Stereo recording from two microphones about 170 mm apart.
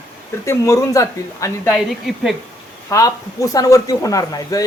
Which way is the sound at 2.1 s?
5° right (ahead or behind).